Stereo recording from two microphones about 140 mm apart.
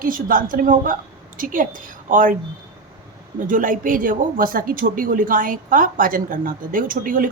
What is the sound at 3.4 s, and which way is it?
Speech, 70° right (ahead or behind).